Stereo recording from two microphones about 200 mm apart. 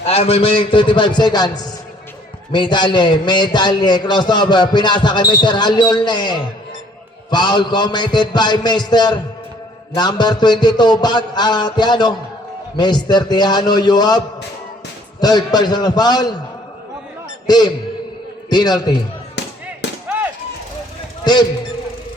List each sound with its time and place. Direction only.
0.0 s a man's voice: 30° left (ahead or behind)
15.2 s a man's voice: 20° left (ahead or behind)
17.4 s a man's voice: 20° left (ahead or behind)
19.4 s music: 60° left (ahead or behind)